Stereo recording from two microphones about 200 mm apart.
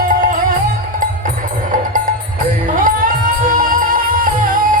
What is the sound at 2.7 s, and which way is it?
Music, 45° right (ahead or behind).